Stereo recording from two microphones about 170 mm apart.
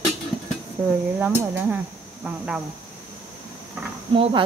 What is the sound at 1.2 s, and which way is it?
Cricket, 10° right (ahead or behind).